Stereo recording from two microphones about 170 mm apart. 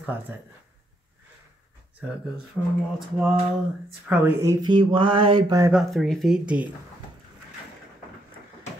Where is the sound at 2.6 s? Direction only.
5° left (ahead or behind).